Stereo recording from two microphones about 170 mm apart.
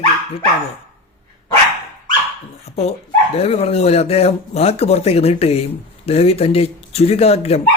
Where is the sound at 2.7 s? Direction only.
40° left (ahead or behind).